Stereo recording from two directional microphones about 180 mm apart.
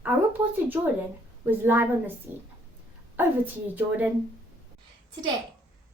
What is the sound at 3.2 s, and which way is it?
Speech, 10° right (ahead or behind).